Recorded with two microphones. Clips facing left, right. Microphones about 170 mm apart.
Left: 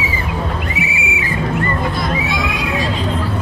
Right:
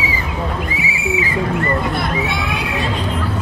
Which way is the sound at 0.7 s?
65° left (ahead or behind).